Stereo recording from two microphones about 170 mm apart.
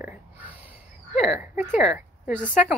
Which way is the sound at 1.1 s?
5° right (ahead or behind).